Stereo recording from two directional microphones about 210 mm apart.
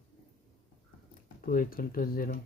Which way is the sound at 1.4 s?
45° left (ahead or behind).